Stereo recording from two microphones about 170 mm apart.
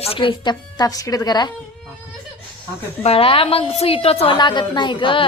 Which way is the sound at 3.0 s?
35° left (ahead or behind).